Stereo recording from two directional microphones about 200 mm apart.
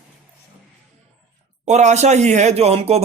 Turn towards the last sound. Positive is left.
turn(degrees=-30)  # may be behind; listen again after turning